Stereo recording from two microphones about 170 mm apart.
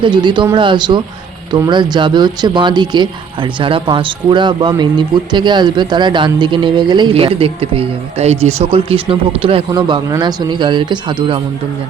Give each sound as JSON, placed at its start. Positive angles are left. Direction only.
{"t": 0.0, "sound": "speech", "side_deg": -25}